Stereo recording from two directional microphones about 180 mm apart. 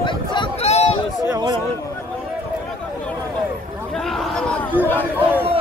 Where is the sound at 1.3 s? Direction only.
25° right (ahead or behind).